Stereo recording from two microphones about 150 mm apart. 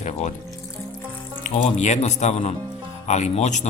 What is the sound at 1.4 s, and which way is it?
Speech, 50° left (ahead or behind).